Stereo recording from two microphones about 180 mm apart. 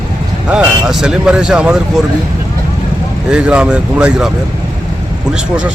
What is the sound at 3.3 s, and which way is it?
Speech, 5° right (ahead or behind).